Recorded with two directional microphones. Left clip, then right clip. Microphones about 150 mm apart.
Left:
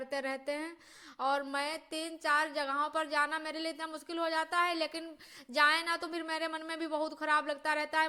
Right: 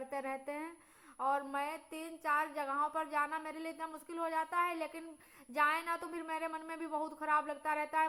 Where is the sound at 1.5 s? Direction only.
30° left (ahead or behind).